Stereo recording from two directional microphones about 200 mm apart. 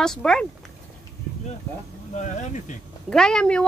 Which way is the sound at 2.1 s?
35° left (ahead or behind).